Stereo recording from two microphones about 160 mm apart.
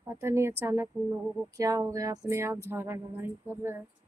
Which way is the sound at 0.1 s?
15° right (ahead or behind).